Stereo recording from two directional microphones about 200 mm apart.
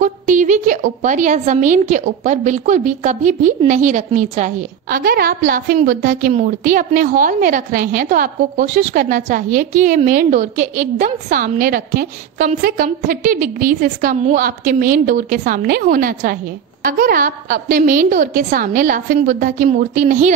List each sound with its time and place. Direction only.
0.0 s a woman's voice: 40° right (ahead or behind)